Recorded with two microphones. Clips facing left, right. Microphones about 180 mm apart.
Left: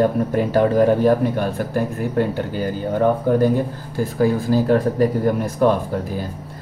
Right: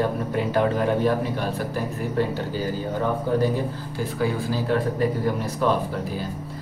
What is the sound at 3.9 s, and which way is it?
Speech, 45° left (ahead or behind).